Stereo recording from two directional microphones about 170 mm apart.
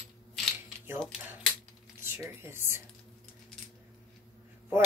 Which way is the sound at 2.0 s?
15° right (ahead or behind).